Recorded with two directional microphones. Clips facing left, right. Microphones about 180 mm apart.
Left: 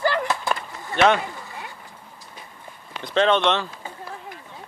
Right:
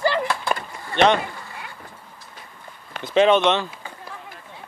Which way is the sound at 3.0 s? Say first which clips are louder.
Right 3 dB; 10° right (ahead or behind).